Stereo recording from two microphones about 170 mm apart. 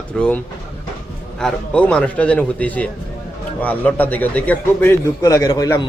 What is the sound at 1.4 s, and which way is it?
A man's voice, 5° left (ahead or behind).